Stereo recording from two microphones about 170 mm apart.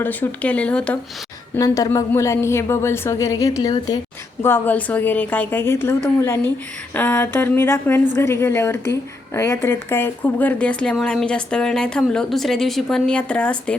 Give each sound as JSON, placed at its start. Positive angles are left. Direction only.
{"t": 0.0, "sound": "a woman's voice", "side_deg": 10}
{"t": 1.5, "sound": "a woman's voice", "side_deg": 20}
{"t": 4.4, "sound": "a woman's voice", "side_deg": 10}